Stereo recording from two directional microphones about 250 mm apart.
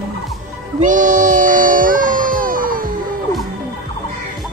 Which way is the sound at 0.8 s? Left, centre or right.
Right.